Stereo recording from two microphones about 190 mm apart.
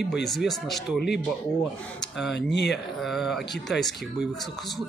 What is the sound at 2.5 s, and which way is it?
Speech, 65° left (ahead or behind).